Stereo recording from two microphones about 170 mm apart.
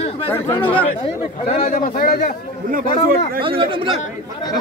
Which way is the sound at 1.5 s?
50° left (ahead or behind).